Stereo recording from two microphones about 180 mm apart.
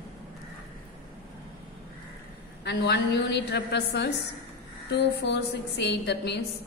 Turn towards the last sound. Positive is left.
turn(degrees=70)  # may be behind; listen again after turning